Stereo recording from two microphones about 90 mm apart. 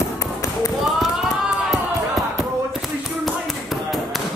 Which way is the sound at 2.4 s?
Centre (ahead or behind).